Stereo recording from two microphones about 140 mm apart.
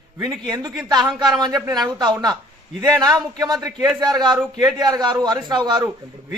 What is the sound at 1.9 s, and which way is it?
A man's voice, 30° right (ahead or behind).